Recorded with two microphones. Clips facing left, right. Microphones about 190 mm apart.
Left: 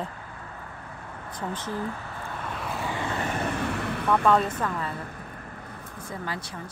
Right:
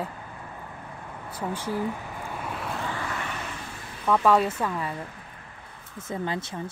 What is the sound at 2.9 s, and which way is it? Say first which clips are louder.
Vehicle: left 2 dB; 20° left (ahead or behind).